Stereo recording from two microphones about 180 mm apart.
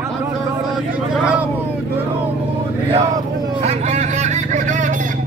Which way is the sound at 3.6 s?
40° right (ahead or behind).